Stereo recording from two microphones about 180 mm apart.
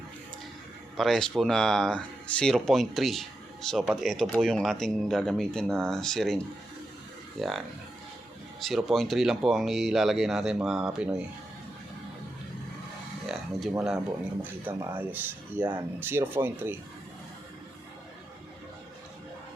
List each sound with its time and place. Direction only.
0.9 s speech: centre (ahead or behind)
8.6 s speech: centre (ahead or behind)
13.3 s a sound: centre (ahead or behind)
14.6 s speech: 10° right (ahead or behind)